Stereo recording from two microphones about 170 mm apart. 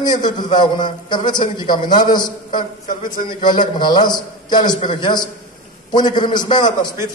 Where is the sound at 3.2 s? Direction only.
25° left (ahead or behind).